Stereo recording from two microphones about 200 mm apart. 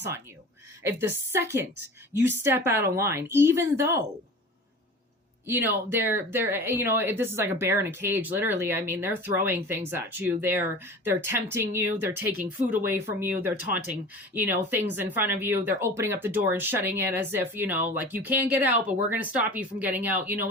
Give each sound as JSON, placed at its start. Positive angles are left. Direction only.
{"t": 0.8, "sound": "speech", "side_deg": -10}
{"t": 5.5, "sound": "speech", "side_deg": -10}